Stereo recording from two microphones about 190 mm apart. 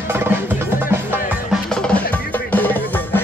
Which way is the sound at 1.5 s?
5° left (ahead or behind).